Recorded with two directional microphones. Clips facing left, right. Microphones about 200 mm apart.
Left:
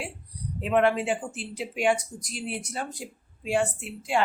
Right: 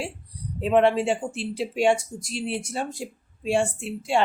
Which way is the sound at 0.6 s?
30° right (ahead or behind).